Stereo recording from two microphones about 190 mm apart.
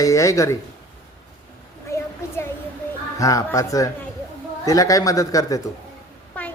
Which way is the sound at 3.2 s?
15° left (ahead or behind).